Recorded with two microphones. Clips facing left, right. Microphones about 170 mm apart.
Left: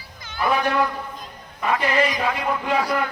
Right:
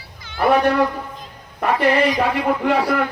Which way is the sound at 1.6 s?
65° right (ahead or behind).